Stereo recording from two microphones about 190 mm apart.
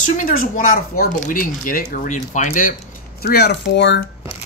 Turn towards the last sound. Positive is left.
turn(degrees=65)  # may be behind; listen again after turning